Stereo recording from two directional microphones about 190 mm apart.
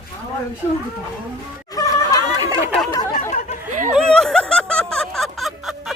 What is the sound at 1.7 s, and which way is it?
Snicker, 20° left (ahead or behind).